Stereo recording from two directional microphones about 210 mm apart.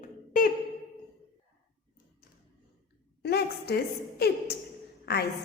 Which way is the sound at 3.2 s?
50° left (ahead or behind).